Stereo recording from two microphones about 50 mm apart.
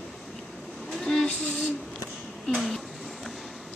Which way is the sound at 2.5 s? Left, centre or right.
Centre.